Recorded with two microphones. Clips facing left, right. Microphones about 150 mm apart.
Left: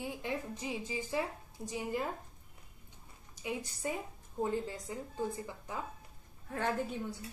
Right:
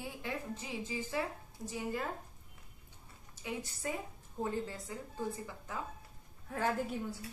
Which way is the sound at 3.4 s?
15° left (ahead or behind).